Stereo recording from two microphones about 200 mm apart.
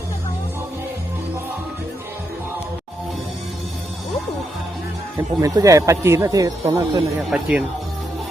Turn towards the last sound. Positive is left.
turn(degrees=-5)  # may be behind; listen again after turning